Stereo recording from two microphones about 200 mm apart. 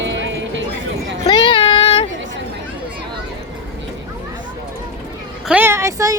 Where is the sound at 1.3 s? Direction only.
25° left (ahead or behind).